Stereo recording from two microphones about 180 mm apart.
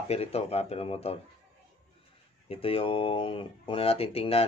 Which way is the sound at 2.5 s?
30° left (ahead or behind).